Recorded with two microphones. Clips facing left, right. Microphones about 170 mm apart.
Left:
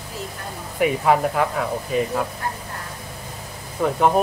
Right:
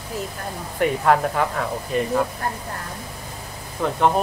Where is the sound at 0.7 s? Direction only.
5° left (ahead or behind).